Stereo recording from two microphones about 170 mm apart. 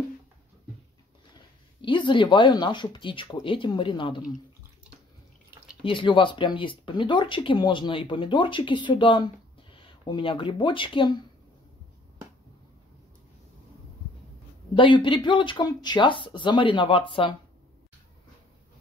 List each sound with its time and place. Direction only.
1.8 s speech: 30° left (ahead or behind)
5.9 s speech: 30° left (ahead or behind)
14.8 s speech: 30° left (ahead or behind)